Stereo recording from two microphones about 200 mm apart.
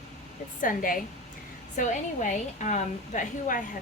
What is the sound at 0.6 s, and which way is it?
A woman's voice, 45° left (ahead or behind).